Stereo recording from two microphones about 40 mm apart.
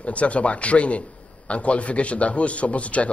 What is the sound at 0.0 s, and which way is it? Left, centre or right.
A man's voice, left.